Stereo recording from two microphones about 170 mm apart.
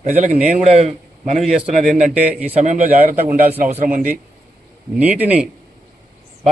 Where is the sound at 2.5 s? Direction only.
45° right (ahead or behind).